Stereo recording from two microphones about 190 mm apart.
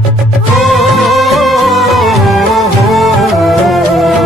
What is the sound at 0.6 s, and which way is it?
Music, centre (ahead or behind).